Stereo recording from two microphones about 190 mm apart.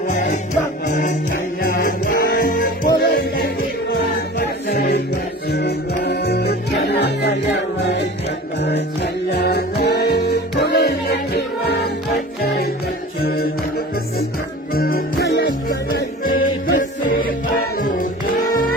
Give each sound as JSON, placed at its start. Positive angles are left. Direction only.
{"t": 0.1, "sound": "music", "side_deg": 40}
{"t": 3.0, "sound": "music", "side_deg": 55}
{"t": 17.7, "sound": "music", "side_deg": 45}